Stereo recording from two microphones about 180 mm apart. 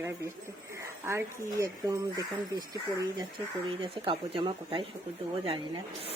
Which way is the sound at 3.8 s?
30° right (ahead or behind).